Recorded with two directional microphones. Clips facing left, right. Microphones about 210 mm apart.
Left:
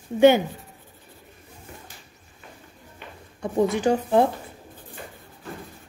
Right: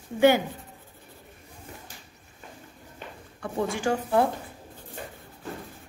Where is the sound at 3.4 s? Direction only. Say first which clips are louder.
Left 6 dB; 20° left (ahead or behind).